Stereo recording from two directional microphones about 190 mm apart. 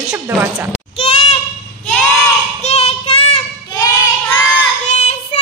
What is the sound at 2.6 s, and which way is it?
Child singing, 35° left (ahead or behind).